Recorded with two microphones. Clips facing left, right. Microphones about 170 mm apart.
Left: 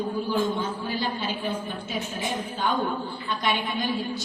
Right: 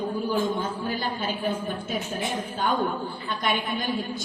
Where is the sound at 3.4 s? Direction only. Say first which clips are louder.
Even; 50° right (ahead or behind).